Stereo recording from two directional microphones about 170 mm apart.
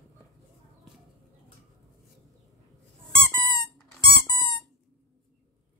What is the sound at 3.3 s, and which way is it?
Squeak, 25° left (ahead or behind).